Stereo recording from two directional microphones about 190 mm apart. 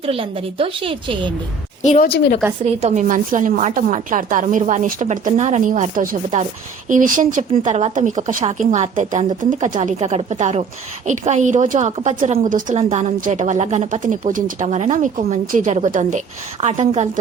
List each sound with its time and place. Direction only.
0.0 s a woman's voice: 30° right (ahead or behind)
1.8 s a woman's voice: 40° left (ahead or behind)
2.0 s a woman's voice: 60° left (ahead or behind)
2.8 s speech: 40° right (ahead or behind)